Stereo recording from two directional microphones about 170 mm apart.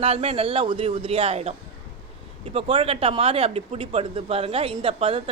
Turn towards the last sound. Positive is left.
turn(degrees=-35)  # may be behind; listen again after turning